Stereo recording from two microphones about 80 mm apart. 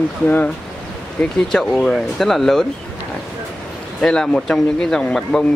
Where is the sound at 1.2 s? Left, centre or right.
Centre.